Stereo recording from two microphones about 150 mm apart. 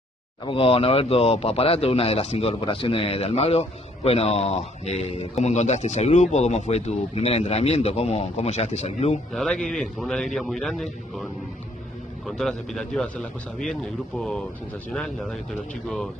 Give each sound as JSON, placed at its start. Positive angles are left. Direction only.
{"t": 0.5, "sound": "a man's voice", "side_deg": 40}
{"t": 9.3, "sound": "a man's voice", "side_deg": 5}
{"t": 12.3, "sound": "a man's voice", "side_deg": 5}